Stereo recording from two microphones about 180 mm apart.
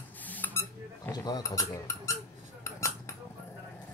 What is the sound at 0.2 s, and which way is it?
Dishes, 10° left (ahead or behind).